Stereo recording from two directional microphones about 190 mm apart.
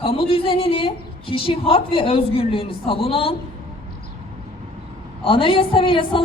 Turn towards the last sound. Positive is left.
turn(degrees=25)  # may be behind; listen again after turning